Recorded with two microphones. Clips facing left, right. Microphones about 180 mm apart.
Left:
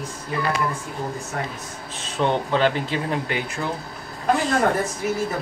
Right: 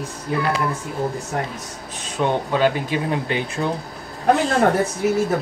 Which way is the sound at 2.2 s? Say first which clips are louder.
Right 1 dB; 10° right (ahead or behind).